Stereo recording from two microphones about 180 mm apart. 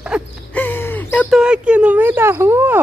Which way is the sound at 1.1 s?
5° right (ahead or behind).